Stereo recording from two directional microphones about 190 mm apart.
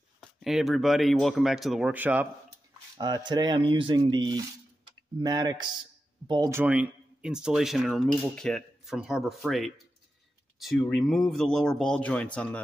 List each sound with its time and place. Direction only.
0.2 s speech: centre (ahead or behind)
3.0 s speech: 20° right (ahead or behind)
6.5 s speech: 10° right (ahead or behind)